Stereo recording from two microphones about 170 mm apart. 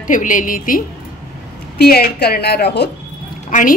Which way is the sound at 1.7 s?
70° left (ahead or behind).